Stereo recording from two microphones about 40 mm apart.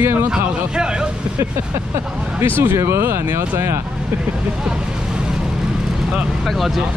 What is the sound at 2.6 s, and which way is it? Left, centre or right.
Speech, right.